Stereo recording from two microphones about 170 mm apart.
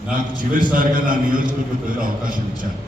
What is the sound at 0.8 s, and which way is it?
Speech, 50° right (ahead or behind).